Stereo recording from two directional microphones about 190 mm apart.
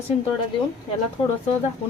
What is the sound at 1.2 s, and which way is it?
Speech, 25° left (ahead or behind).